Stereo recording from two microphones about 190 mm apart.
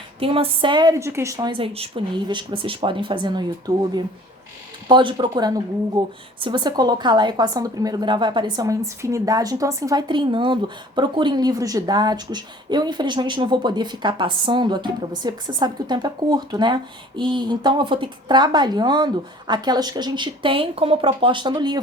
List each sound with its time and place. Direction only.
0.2 s a woman's voice: 30° right (ahead or behind)
4.9 s a woman's voice: 25° right (ahead or behind)